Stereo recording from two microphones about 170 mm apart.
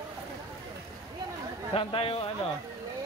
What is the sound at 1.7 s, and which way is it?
Speech, 35° left (ahead or behind).